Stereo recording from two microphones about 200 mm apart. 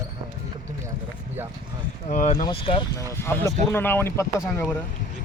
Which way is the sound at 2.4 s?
25° left (ahead or behind).